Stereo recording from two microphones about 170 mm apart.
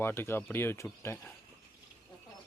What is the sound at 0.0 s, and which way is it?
Speech, 15° left (ahead or behind).